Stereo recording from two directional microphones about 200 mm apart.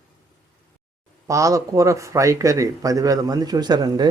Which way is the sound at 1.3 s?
15° right (ahead or behind).